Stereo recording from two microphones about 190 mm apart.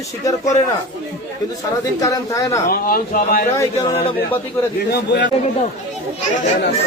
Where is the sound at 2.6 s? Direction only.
50° left (ahead or behind).